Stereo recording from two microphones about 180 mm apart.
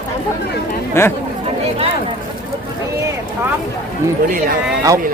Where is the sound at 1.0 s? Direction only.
15° left (ahead or behind).